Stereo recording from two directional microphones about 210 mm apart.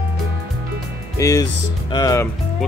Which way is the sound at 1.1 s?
15° left (ahead or behind).